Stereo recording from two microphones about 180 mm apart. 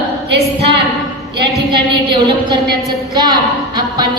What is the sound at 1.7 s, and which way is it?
A woman's voice, 25° right (ahead or behind).